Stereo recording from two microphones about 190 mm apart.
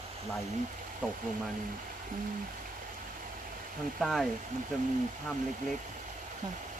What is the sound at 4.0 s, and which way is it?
Speech, centre (ahead or behind).